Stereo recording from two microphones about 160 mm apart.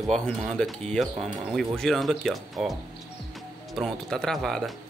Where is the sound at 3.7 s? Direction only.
5° left (ahead or behind).